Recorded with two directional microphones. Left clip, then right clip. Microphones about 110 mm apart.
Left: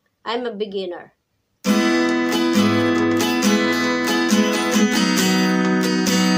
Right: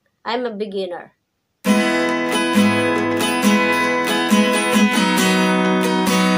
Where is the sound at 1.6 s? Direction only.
30° left (ahead or behind).